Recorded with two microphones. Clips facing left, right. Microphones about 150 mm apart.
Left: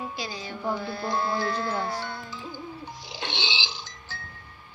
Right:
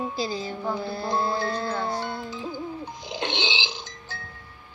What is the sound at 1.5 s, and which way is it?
Music, 20° right (ahead or behind).